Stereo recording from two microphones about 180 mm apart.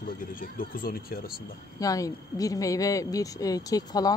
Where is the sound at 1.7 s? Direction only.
20° left (ahead or behind).